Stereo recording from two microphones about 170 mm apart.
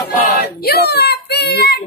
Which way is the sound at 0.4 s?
70° left (ahead or behind).